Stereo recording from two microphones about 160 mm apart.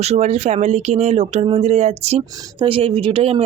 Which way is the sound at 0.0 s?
45° right (ahead or behind).